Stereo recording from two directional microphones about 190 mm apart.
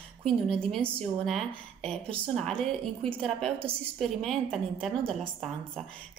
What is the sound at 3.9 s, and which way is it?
A woman's voice, centre (ahead or behind).